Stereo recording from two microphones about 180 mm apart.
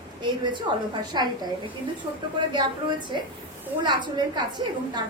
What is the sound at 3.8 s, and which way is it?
Speech, 25° right (ahead or behind).